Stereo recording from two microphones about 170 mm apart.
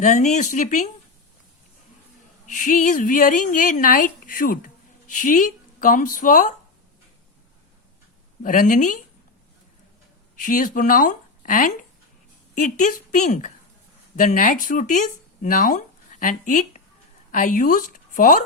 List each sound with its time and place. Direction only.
0.0 s speech: 45° left (ahead or behind)
2.5 s speech: 50° left (ahead or behind)
8.4 s speech: 50° left (ahead or behind)
10.3 s speech: 50° left (ahead or behind)